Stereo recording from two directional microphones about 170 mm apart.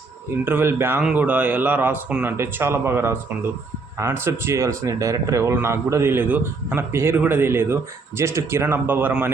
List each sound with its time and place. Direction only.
0.4 s speech: 15° right (ahead or behind)